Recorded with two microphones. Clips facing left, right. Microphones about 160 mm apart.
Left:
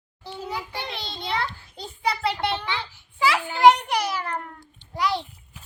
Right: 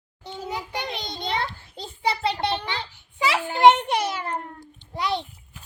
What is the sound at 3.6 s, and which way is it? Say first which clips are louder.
A child's voice: right 1 dB; 25° right (ahead or behind).